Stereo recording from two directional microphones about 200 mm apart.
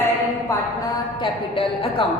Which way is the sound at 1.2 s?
25° left (ahead or behind).